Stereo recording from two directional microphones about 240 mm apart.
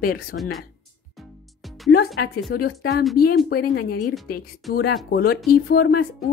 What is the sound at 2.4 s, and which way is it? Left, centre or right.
Speech, left.